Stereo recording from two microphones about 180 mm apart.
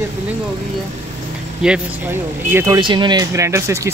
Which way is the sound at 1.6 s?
10° right (ahead or behind).